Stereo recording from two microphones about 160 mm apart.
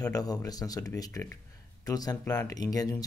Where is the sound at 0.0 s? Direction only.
25° left (ahead or behind).